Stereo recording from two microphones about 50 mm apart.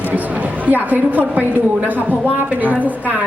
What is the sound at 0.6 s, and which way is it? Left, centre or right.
Speech, right.